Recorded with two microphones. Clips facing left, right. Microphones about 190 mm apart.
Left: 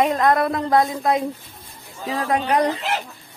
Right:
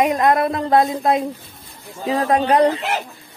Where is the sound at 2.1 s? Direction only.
35° right (ahead or behind).